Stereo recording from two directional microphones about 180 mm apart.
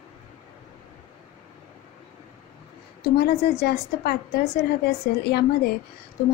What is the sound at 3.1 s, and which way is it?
A woman's voice, 60° left (ahead or behind).